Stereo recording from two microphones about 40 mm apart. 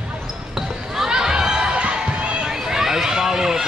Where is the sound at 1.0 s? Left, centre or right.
Centre.